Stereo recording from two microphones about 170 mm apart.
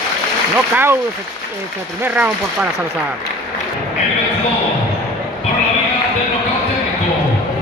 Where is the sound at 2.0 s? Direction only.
10° right (ahead or behind).